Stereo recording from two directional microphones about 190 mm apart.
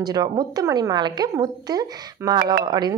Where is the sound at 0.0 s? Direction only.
20° right (ahead or behind).